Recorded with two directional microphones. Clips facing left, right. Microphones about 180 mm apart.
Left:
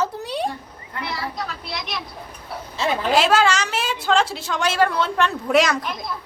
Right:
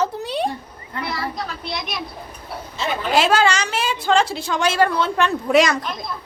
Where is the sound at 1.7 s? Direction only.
15° right (ahead or behind).